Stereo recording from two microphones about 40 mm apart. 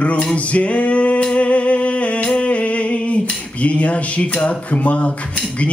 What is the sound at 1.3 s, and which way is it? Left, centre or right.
Music, left.